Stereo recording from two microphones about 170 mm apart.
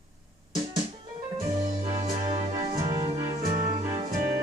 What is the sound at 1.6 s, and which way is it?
Music, 35° right (ahead or behind).